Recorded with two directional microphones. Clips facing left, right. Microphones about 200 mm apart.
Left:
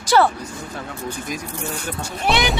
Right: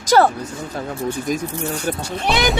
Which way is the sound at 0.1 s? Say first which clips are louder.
Right 2 dB; 40° right (ahead or behind).